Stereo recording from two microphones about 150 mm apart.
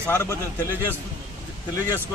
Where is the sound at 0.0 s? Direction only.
15° left (ahead or behind).